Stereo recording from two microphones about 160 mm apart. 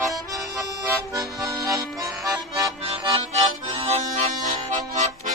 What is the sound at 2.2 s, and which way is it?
Music, 20° right (ahead or behind).